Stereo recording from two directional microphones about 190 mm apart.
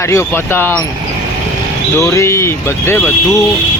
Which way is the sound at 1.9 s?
15° left (ahead or behind).